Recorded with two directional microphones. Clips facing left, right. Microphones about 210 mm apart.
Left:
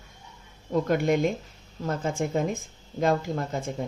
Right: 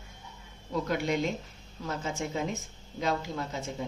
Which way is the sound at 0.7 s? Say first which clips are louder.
Left 6 dB; 50° left (ahead or behind).